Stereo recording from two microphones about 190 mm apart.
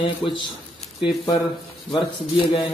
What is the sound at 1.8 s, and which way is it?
Speech, 25° left (ahead or behind).